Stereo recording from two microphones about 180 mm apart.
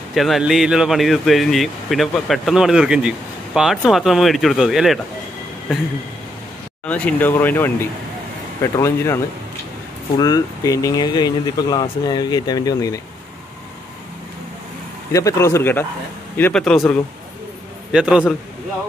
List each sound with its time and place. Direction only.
0.1 s speech: centre (ahead or behind)
6.9 s speech: 10° left (ahead or behind)
15.1 s speech: 15° left (ahead or behind); by 18.2 s 5° right (ahead or behind)